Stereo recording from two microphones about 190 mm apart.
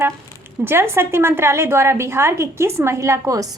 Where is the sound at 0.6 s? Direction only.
10° right (ahead or behind).